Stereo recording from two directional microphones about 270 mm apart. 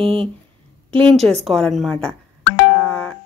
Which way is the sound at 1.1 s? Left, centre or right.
Centre.